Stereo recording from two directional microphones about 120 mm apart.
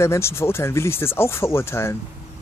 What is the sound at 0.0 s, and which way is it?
Speech, 20° left (ahead or behind).